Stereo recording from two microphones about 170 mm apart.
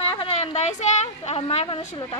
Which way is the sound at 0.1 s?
35° left (ahead or behind).